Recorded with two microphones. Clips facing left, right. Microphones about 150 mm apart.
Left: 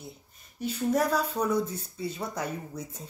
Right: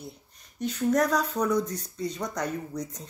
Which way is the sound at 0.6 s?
5° left (ahead or behind).